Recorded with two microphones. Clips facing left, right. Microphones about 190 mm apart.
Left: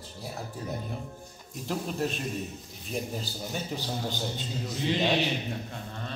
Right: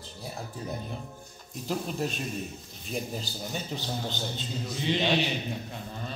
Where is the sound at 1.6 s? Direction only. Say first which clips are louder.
Even; centre (ahead or behind).